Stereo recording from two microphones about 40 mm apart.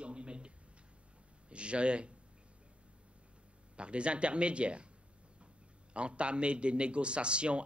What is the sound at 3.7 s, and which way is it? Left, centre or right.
A man's voice, right.